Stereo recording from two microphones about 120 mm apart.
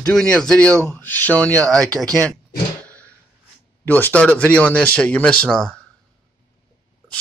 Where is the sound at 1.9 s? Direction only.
30° right (ahead or behind).